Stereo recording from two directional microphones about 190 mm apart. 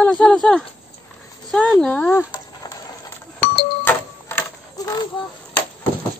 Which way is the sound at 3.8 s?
10° left (ahead or behind).